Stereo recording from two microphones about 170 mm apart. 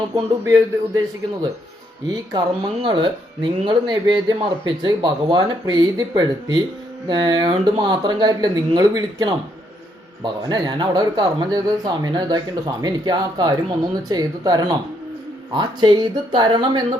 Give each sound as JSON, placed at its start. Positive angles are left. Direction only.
{"t": 0.1, "sound": "speech", "side_deg": -25}